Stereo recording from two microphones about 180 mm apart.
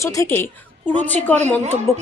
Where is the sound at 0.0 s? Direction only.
15° left (ahead or behind).